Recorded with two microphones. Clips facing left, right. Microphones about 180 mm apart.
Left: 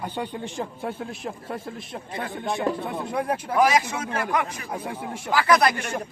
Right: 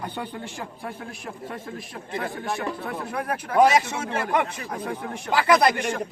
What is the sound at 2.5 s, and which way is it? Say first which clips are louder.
Speech: left 7 dB; 20° left (ahead or behind).